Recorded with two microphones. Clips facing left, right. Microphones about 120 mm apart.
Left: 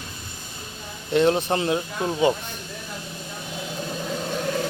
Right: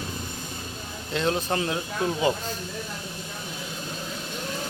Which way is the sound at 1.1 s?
25° left (ahead or behind).